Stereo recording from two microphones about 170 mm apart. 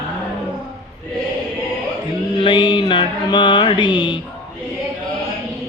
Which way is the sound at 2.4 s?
30° left (ahead or behind).